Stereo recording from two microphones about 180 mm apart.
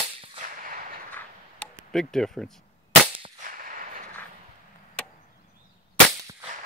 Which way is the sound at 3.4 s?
50° right (ahead or behind).